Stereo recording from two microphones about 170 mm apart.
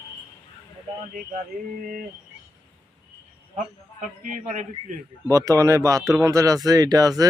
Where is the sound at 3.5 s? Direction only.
50° right (ahead or behind).